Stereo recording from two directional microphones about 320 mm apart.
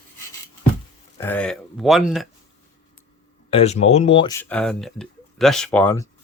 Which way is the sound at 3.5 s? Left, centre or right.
Centre.